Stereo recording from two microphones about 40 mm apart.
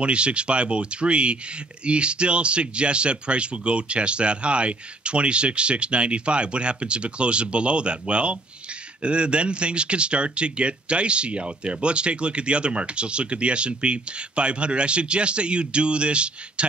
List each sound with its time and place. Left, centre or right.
0.0 s speech: right